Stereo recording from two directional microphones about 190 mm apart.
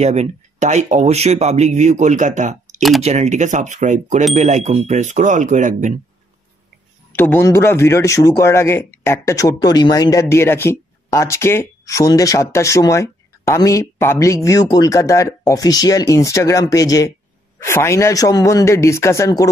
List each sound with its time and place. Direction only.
0.0 s speech: 35° right (ahead or behind)
7.2 s speech: 10° left (ahead or behind)